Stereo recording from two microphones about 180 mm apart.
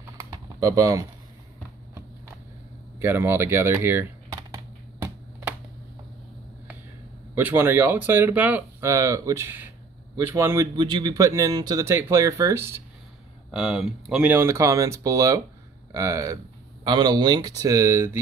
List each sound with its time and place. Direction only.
0.2 s typing: 20° right (ahead or behind)
3.0 s speech: 10° right (ahead or behind)
7.3 s speech: 10° right (ahead or behind)
13.5 s speech: 5° right (ahead or behind)